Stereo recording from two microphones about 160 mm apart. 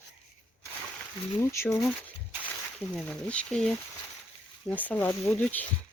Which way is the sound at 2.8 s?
5° left (ahead or behind).